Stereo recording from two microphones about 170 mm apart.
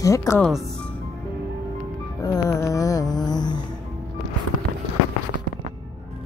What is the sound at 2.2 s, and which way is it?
Music, 20° left (ahead or behind).